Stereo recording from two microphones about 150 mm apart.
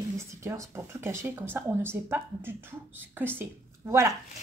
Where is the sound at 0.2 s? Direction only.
20° right (ahead or behind).